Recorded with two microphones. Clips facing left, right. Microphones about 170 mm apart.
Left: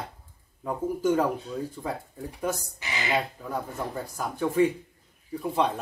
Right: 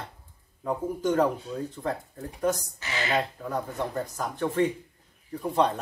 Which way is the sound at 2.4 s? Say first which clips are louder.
Right 4 dB; 10° left (ahead or behind).